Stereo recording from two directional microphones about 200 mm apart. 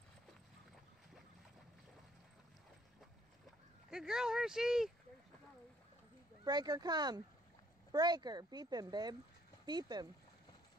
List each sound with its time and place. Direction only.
3.9 s speech: 5° right (ahead or behind)
6.4 s speech: 20° right (ahead or behind)